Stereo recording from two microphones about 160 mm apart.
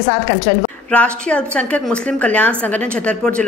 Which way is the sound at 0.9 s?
10° left (ahead or behind).